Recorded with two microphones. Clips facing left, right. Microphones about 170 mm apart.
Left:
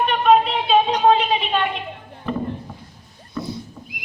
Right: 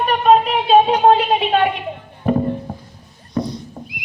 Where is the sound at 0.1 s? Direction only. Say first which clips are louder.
Right 4 dB; 50° right (ahead or behind).